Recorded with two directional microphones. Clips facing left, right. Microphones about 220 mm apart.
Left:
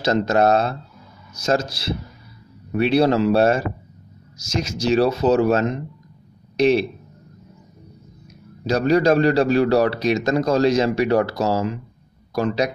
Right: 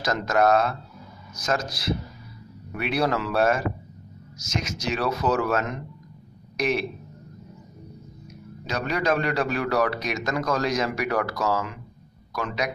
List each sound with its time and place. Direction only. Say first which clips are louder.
0.0 s speech: left 5 dB; 30° left (ahead or behind)
8.6 s a man's voice: left 9 dB; 35° left (ahead or behind)